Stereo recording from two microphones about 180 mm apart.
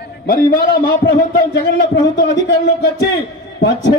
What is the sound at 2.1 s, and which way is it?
Speech, 80° left.